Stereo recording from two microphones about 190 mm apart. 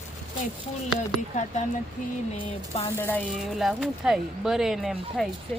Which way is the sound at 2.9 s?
10° left (ahead or behind).